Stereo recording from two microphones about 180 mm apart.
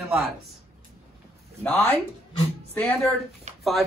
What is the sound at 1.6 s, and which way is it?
Speech, 10° left (ahead or behind).